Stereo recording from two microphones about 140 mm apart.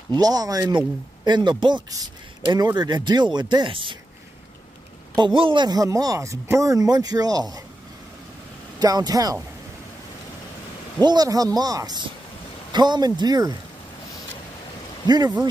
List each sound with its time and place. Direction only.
0.1 s speech: 30° right (ahead or behind)
5.1 s speech: 35° right (ahead or behind)
8.7 s speech: 30° right (ahead or behind)
11.0 s speech: 30° right (ahead or behind)
15.0 s speech: 30° right (ahead or behind)